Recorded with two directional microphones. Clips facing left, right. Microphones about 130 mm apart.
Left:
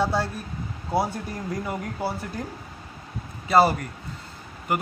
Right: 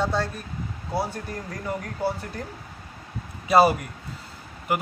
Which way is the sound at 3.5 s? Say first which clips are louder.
Right 1 dB; 10° right (ahead or behind).